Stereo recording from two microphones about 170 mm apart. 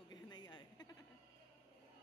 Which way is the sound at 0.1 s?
25° left (ahead or behind).